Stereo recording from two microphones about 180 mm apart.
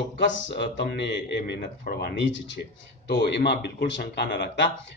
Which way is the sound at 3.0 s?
70° left (ahead or behind).